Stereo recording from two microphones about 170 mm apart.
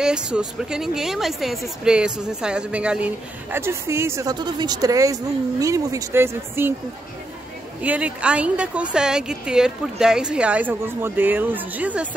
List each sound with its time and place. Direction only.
0.0 s speech: 5° right (ahead or behind)
7.8 s a woman's voice: 10° right (ahead or behind)